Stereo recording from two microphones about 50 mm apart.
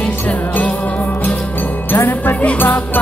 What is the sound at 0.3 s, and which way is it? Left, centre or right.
Music, left.